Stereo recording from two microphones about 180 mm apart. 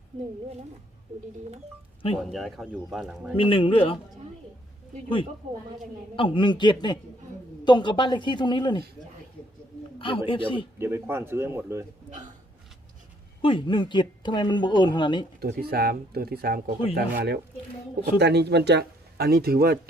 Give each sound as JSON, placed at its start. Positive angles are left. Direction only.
{"t": 2.1, "sound": "speech", "side_deg": 0}
{"t": 3.3, "sound": "speech", "side_deg": 30}
{"t": 6.1, "sound": "speech", "side_deg": 30}
{"t": 10.0, "sound": "speech", "side_deg": 30}
{"t": 10.8, "sound": "speech", "side_deg": -15}
{"t": 13.4, "sound": "speech", "side_deg": 25}
{"t": 15.4, "sound": "speech", "side_deg": -60}